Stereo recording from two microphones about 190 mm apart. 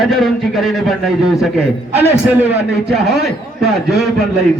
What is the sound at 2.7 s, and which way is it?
Speech, 55° right (ahead or behind).